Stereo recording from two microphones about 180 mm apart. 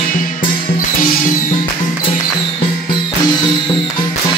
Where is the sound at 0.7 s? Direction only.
50° left (ahead or behind).